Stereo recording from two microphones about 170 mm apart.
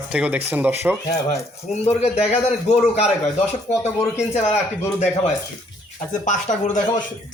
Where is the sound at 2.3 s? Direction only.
40° left (ahead or behind).